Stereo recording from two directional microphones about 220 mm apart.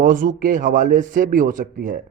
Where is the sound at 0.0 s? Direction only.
35° right (ahead or behind).